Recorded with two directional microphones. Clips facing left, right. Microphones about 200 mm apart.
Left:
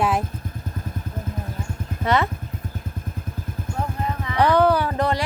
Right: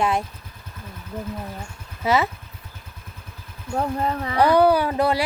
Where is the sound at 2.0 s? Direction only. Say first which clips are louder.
Even; 5° right (ahead or behind).